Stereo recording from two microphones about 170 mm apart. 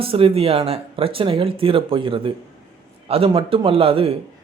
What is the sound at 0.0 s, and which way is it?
A man's voice, 35° right (ahead or behind).